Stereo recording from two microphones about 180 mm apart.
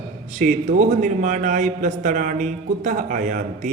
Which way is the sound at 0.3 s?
45° right (ahead or behind).